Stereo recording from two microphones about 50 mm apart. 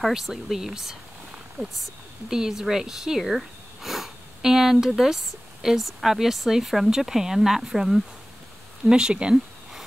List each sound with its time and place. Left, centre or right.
0.1 s speech: centre